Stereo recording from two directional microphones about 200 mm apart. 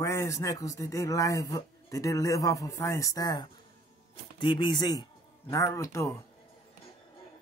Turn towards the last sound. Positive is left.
turn(degrees=15)  # may be behind; listen again after turning